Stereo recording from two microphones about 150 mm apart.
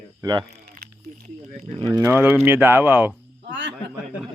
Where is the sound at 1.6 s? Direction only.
30° right (ahead or behind).